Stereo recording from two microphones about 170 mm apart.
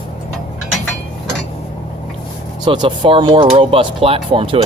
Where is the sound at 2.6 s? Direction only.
25° right (ahead or behind).